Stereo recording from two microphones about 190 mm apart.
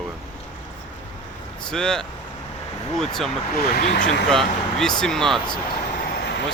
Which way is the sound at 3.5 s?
55° left (ahead or behind).